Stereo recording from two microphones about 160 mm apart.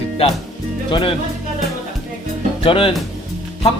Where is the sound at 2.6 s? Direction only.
35° left (ahead or behind).